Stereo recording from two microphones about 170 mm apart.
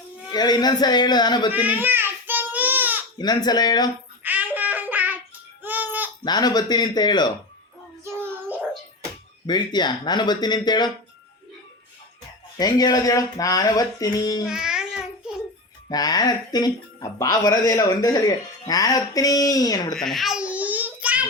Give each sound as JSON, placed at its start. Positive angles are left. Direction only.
{"t": 0.3, "sound": "speech", "side_deg": 25}
{"t": 1.5, "sound": "child singing", "side_deg": -10}
{"t": 3.2, "sound": "speech", "side_deg": 25}
{"t": 4.2, "sound": "a sound", "side_deg": -10}
{"t": 6.2, "sound": "speech", "side_deg": 25}
{"t": 8.0, "sound": "child singing", "side_deg": -10}
{"t": 9.5, "sound": "speech", "side_deg": 25}
{"t": 12.5, "sound": "speech", "side_deg": 20}
{"t": 14.4, "sound": "babbling", "side_deg": -5}
{"t": 15.9, "sound": "speech", "side_deg": 25}
{"t": 20.0, "sound": "a sound", "side_deg": 0}